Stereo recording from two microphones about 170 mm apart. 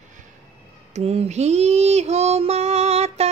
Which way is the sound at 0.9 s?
35° right (ahead or behind).